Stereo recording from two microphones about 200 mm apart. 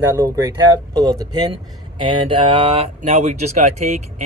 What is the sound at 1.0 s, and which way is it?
Speech, 20° right (ahead or behind).